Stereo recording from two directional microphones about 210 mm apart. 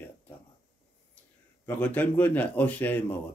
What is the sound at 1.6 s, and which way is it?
Speech, 10° left (ahead or behind).